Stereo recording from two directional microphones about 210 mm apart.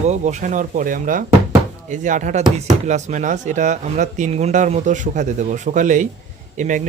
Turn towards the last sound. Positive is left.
turn(degrees=-35)  # may be behind; listen again after turning